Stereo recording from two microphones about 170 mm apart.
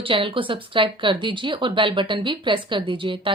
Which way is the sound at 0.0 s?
30° right (ahead or behind).